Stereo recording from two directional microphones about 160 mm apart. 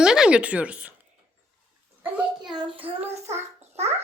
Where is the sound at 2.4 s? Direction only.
30° right (ahead or behind).